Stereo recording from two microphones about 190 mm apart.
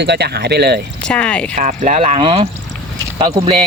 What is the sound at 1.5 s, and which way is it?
Speech, 40° right (ahead or behind).